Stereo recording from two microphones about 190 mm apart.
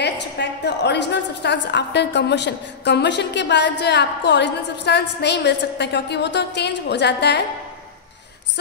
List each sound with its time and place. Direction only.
0.0 s a woman's voice: 65° left (ahead or behind)